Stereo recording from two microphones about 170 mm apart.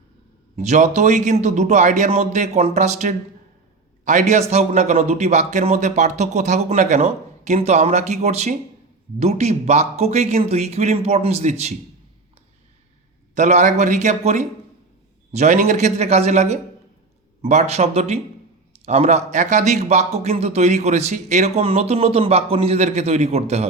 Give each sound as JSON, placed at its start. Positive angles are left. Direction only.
{"t": 0.5, "sound": "a man's voice", "side_deg": -45}
{"t": 13.3, "sound": "a man's voice", "side_deg": -45}